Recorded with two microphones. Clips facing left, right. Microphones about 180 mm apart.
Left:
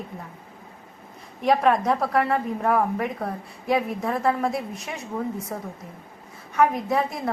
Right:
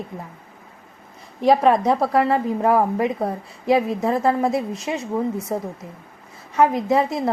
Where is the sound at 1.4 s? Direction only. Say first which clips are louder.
Right 4 dB; 30° right (ahead or behind).